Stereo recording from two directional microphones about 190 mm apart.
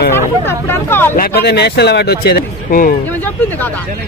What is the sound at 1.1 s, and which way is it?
Speech, 55° left (ahead or behind).